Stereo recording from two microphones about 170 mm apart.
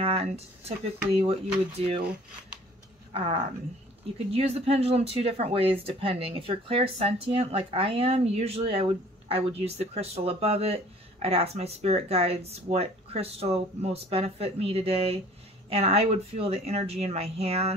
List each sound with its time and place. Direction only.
0.0 s speech: 35° right (ahead or behind)
3.1 s speech: 35° right (ahead or behind)